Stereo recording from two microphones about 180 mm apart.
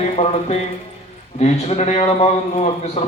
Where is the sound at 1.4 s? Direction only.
40° left (ahead or behind).